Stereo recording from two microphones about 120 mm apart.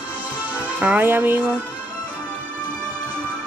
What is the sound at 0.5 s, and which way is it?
Speech, 10° right (ahead or behind).